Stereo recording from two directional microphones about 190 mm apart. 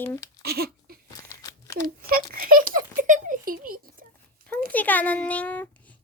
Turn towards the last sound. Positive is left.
turn(degrees=10)  # may be behind; listen again after turning